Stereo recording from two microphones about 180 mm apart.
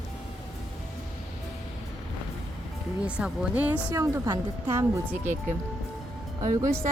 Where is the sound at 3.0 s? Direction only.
10° right (ahead or behind).